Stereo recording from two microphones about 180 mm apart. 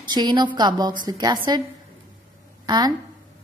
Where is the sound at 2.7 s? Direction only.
20° right (ahead or behind).